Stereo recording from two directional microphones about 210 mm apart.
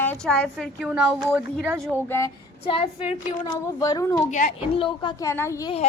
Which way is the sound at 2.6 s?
25° left (ahead or behind).